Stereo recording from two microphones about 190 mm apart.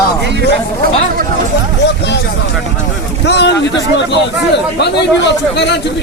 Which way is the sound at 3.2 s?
60° left (ahead or behind).